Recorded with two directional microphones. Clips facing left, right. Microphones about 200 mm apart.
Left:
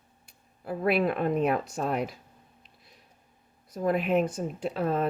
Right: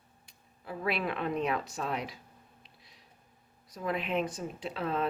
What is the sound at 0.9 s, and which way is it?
Speech, 50° left (ahead or behind).